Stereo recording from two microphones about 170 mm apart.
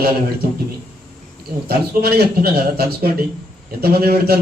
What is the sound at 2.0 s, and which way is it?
Speech, 65° right (ahead or behind).